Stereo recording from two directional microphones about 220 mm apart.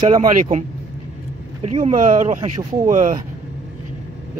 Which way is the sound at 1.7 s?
30° right (ahead or behind).